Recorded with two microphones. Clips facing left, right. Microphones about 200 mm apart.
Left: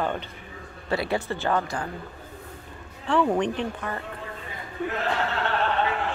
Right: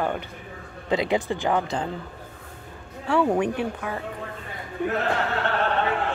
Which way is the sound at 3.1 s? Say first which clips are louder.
Right 1 dB; 10° right (ahead or behind).